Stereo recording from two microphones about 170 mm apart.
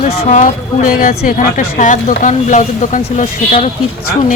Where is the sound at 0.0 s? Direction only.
35° left (ahead or behind).